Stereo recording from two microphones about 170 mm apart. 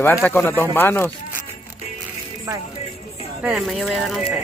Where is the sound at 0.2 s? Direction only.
10° left (ahead or behind).